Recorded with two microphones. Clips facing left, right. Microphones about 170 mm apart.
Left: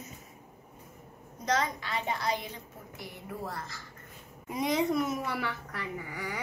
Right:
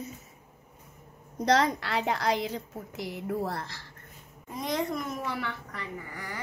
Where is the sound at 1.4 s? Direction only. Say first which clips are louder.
Right 6 dB; 75° right (ahead or behind).